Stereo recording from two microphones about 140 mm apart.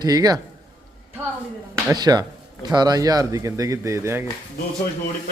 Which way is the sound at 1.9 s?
30° right (ahead or behind).